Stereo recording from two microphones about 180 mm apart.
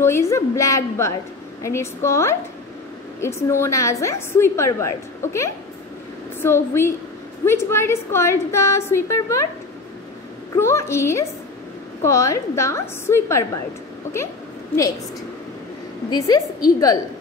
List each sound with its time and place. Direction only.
0.0 s a woman's voice: 15° left (ahead or behind)
10.5 s a woman's voice: 15° left (ahead or behind)
16.1 s a woman's voice: 20° left (ahead or behind)